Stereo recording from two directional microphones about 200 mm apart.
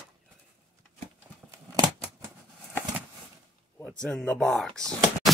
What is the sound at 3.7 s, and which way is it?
Speech, 5° left (ahead or behind).